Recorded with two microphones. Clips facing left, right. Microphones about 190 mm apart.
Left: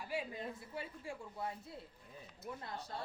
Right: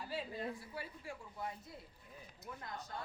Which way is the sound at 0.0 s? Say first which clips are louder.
Left 1 dB; 15° left (ahead or behind).